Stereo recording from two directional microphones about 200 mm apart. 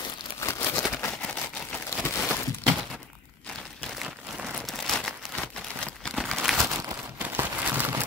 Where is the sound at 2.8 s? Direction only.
Centre (ahead or behind).